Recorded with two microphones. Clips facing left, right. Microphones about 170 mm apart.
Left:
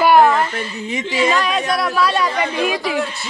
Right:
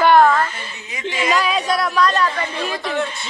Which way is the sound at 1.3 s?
5° right (ahead or behind).